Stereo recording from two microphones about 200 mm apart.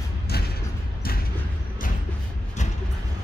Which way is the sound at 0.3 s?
50° left (ahead or behind).